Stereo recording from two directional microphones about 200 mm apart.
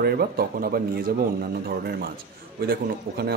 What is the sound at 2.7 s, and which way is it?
Speech, 50° right (ahead or behind).